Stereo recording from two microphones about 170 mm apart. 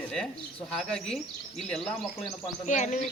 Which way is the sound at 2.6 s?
45° left (ahead or behind).